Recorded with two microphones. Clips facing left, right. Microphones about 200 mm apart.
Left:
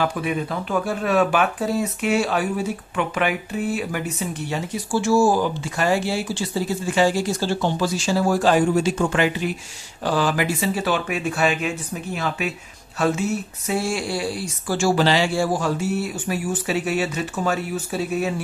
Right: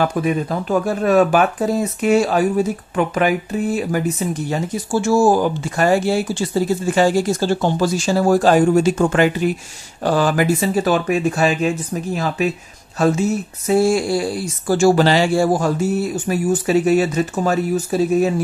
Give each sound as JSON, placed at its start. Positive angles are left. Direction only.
{"t": 0.0, "sound": "speech", "side_deg": -40}
{"t": 13.7, "sound": "speech", "side_deg": -45}